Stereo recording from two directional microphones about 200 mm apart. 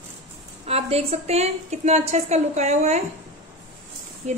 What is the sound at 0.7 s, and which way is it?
Speech, 30° right (ahead or behind).